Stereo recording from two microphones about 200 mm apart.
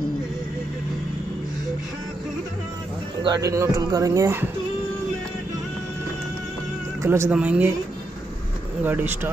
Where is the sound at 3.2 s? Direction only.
20° right (ahead or behind).